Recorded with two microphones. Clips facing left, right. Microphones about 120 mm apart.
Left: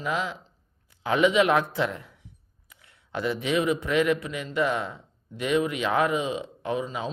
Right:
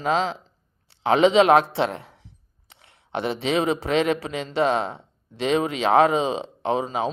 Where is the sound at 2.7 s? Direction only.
25° right (ahead or behind).